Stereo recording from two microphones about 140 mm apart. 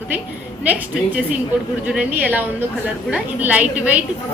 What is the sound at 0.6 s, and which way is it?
A woman's voice, 10° right (ahead or behind).